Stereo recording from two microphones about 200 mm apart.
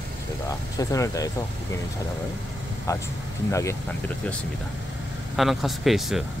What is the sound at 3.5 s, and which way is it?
Speech, 15° left (ahead or behind).